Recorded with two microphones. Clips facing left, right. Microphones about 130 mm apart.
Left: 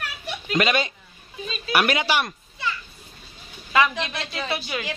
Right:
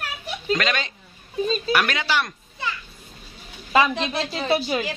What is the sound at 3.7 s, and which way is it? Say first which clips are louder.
A woman's voice: right 2 dB; 30° right (ahead or behind).